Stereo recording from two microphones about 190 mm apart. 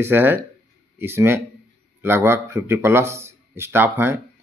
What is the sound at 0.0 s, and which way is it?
A man's voice, 10° right (ahead or behind).